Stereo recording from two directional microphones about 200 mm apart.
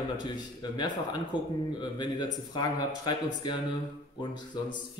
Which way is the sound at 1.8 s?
20° left (ahead or behind).